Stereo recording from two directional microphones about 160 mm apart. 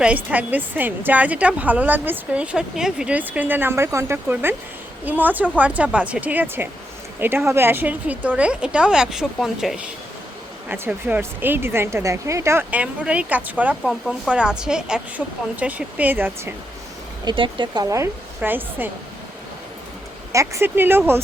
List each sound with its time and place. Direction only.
0.0 s a woman's voice: 10° right (ahead or behind)
17.2 s a woman's voice: 30° right (ahead or behind); by 18.9 s 10° right (ahead or behind)
20.3 s a woman's voice: 20° right (ahead or behind)